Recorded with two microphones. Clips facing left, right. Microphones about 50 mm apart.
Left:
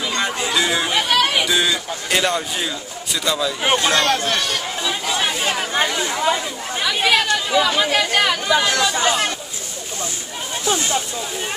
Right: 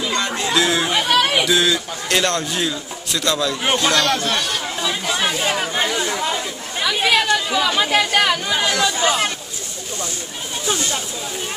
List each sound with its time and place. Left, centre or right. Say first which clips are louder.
0.0 s chicken: even; centre
0.4 s speech: right 3 dB; centre
4.0 s speech: left 1 dB; left
4.8 s chatter: right 1 dB; centre
6.8 s speech: even; centre